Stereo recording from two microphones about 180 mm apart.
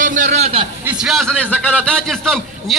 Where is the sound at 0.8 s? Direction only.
5° right (ahead or behind).